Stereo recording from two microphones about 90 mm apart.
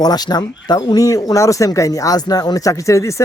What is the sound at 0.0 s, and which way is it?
A man's voice, 50° left (ahead or behind).